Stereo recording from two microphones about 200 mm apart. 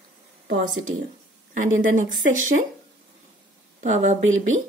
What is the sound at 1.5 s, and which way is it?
Speech, 40° right (ahead or behind).